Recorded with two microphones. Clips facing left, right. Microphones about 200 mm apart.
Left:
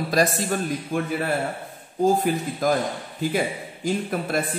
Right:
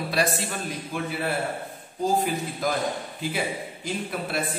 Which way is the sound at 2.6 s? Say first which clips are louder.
Left 5 dB; 45° left (ahead or behind).